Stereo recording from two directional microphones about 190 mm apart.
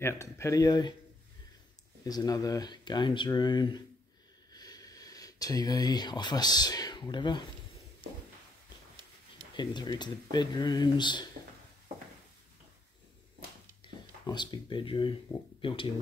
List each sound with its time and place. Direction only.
0.0 s speech: 15° left (ahead or behind)
2.0 s speech: 20° left (ahead or behind)
9.6 s speech: 25° left (ahead or behind)
14.2 s speech: 25° left (ahead or behind)